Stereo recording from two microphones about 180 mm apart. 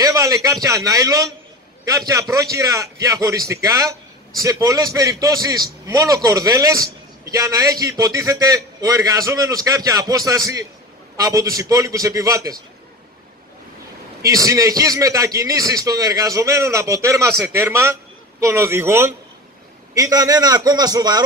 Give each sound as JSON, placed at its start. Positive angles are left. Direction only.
{"t": 0.0, "sound": "a man's voice", "side_deg": -20}
{"t": 14.2, "sound": "a man's voice", "side_deg": -20}